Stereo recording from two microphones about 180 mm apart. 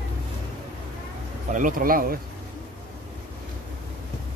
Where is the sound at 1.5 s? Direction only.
45° right (ahead or behind).